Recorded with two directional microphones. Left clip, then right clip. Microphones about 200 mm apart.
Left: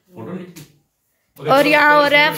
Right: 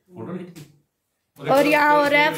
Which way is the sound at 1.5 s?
5° right (ahead or behind).